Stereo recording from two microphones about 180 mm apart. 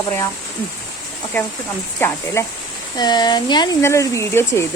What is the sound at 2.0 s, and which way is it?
Speech, 15° left (ahead or behind).